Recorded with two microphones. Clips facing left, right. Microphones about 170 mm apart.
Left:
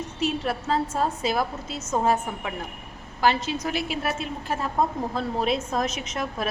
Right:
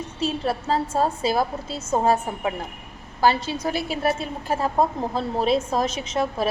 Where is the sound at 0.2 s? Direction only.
30° right (ahead or behind).